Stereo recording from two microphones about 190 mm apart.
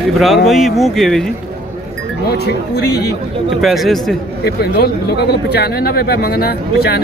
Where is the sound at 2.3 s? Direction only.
60° left (ahead or behind).